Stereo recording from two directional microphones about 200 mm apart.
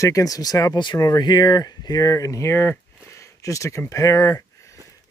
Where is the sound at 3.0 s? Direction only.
15° left (ahead or behind).